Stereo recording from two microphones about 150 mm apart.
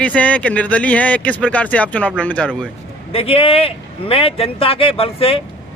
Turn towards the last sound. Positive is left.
turn(degrees=40)  # may be behind; listen again after turning